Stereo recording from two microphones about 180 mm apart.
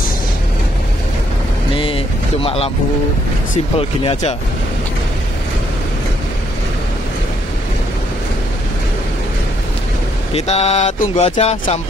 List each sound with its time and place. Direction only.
1.8 s vehicle: 30° left (ahead or behind)
3.7 s speech: 30° left (ahead or behind)
10.3 s speech: 35° left (ahead or behind)